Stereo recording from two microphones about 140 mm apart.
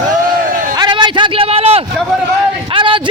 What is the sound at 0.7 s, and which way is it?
A man's voice, 30° right (ahead or behind).